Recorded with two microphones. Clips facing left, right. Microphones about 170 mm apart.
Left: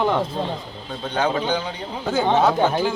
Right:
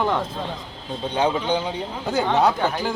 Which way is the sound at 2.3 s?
20° left (ahead or behind).